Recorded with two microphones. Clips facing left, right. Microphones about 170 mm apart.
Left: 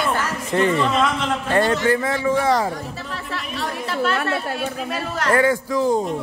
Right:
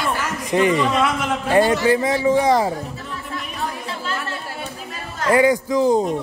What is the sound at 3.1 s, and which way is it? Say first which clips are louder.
Speech: even; 85° left.